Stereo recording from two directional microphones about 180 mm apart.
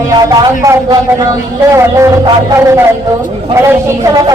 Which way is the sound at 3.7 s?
20° right (ahead or behind).